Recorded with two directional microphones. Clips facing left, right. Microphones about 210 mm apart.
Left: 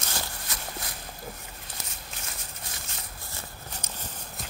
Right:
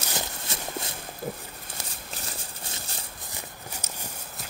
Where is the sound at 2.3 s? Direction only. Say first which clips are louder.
Right 3 dB; 30° right (ahead or behind).